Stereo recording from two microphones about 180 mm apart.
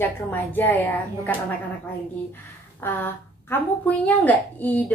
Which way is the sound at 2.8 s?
10° left (ahead or behind).